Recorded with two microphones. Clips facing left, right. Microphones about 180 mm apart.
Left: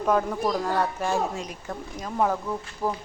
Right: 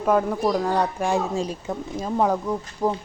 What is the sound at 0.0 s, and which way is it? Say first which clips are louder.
A woman's voice: right 3 dB; 5° right (ahead or behind).